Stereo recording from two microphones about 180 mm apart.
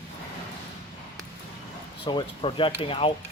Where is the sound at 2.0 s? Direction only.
30° left (ahead or behind).